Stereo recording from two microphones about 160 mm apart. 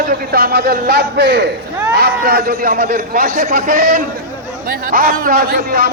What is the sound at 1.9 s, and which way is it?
A man's voice, 75° right (ahead or behind).